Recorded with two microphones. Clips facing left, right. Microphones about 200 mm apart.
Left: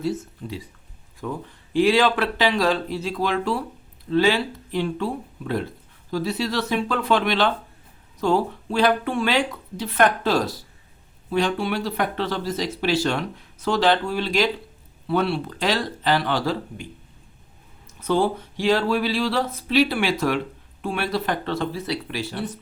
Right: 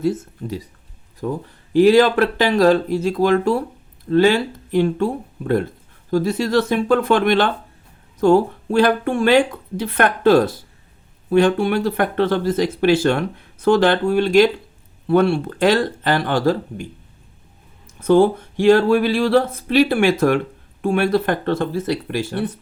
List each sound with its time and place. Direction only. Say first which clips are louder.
0.0 s speech: right 5 dB; 50° right (ahead or behind)
1.2 s speech: right 6 dB; 35° right (ahead or behind)
18.0 s speech: right 8 dB; 50° right (ahead or behind)